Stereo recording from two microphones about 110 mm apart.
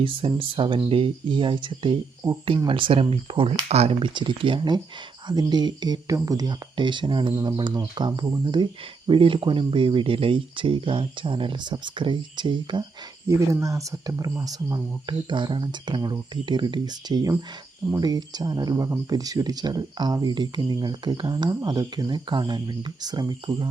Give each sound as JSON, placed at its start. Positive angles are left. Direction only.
{"t": 0.0, "sound": "speech", "side_deg": -55}
{"t": 2.6, "sound": "speech", "side_deg": -50}
{"t": 3.5, "sound": "speech", "side_deg": -70}
{"t": 4.1, "sound": "speech", "side_deg": -45}
{"t": 13.2, "sound": "speech", "side_deg": -30}